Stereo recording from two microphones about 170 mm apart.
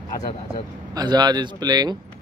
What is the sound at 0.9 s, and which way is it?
Speech, 25° right (ahead or behind).